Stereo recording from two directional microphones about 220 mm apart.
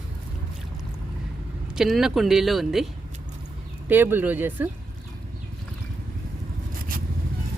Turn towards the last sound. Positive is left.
turn(degrees=-40)  # may be behind; listen again after turning